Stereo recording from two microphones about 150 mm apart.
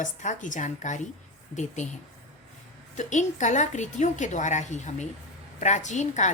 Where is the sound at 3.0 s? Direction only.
55° left (ahead or behind).